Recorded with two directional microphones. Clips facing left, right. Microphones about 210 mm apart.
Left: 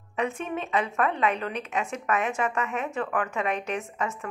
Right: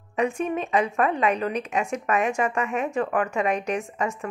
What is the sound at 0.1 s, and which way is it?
A woman's voice, 15° right (ahead or behind).